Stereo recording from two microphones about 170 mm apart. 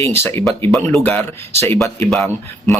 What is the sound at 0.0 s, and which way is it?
Speech, 15° left (ahead or behind).